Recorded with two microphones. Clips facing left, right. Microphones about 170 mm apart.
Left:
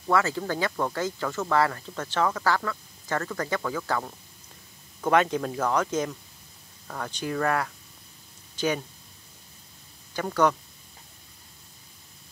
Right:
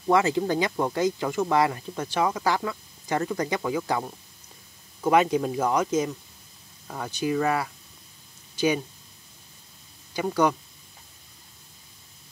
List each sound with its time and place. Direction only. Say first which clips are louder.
0.1 s speech: right 4 dB; 20° right (ahead or behind)
10.1 s speech: right 1 dB; 10° right (ahead or behind)